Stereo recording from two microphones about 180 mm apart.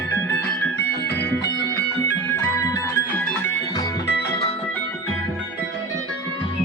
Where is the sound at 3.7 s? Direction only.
20° left (ahead or behind).